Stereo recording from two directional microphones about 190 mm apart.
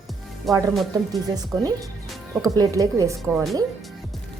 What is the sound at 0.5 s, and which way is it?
Speech, centre (ahead or behind).